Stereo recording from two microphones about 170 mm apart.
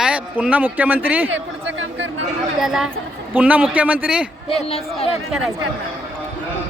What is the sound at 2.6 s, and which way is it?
A man's voice, centre (ahead or behind).